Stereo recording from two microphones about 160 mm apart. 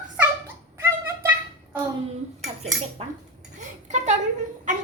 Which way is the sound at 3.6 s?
45° right (ahead or behind).